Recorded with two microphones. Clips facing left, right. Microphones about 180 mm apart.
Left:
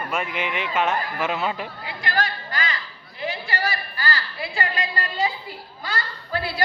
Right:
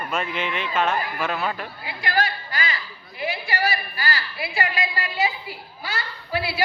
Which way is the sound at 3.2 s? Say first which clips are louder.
Right 2 dB; 10° right (ahead or behind).